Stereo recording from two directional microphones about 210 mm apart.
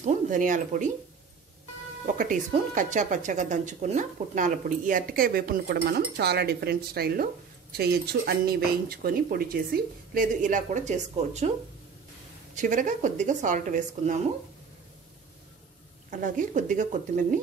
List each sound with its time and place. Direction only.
0.0 s speech: 40° right (ahead or behind)
2.1 s speech: 40° right (ahead or behind)
12.5 s speech: 40° right (ahead or behind)
16.1 s speech: 40° right (ahead or behind)